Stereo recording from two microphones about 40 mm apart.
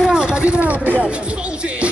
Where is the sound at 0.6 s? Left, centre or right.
Right.